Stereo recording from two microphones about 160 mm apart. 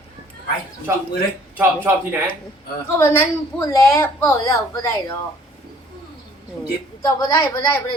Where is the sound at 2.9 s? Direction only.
15° left (ahead or behind).